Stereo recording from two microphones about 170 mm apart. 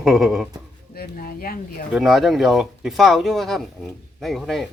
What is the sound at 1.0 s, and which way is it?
Speech, 60° left (ahead or behind).